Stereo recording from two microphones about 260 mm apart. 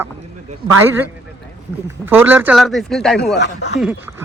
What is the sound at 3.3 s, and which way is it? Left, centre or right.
Speech, left.